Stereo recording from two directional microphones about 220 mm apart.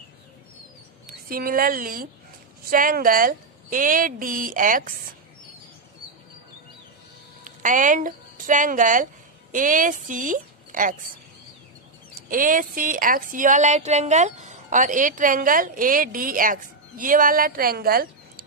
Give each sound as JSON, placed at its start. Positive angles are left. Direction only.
{"t": 1.0, "sound": "a woman's voice", "side_deg": -40}
{"t": 7.4, "sound": "a woman's voice", "side_deg": -35}
{"t": 12.3, "sound": "a woman's voice", "side_deg": -40}